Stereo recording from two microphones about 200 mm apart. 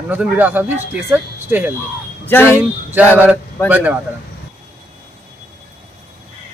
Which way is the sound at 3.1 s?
10° right (ahead or behind).